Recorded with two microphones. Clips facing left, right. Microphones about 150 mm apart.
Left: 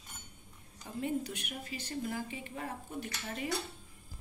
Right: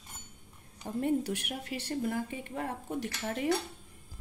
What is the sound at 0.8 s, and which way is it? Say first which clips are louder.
A woman's voice: right 6 dB; 65° right (ahead or behind).